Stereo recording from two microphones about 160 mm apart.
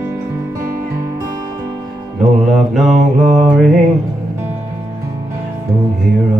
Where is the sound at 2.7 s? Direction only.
Centre (ahead or behind).